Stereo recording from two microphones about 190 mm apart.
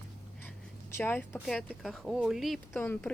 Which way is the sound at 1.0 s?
10° left (ahead or behind).